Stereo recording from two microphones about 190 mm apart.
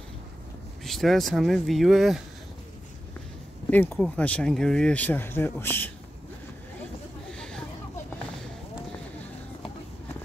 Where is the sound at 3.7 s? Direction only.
5° left (ahead or behind).